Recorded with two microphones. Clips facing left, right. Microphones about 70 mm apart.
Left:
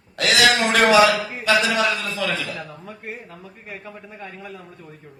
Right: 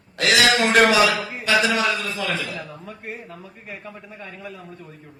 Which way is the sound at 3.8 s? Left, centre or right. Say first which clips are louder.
Left 1 dB; centre.